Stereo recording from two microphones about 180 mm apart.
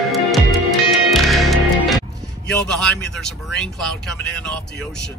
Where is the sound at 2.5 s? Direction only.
5° left (ahead or behind).